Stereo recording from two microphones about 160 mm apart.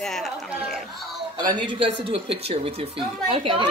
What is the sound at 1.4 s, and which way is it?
Speech, 25° right (ahead or behind).